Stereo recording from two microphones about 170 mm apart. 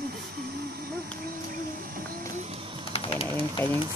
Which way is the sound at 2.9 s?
35° left (ahead or behind).